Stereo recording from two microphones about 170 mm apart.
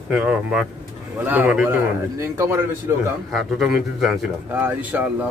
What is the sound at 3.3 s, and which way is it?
A man's voice, centre (ahead or behind).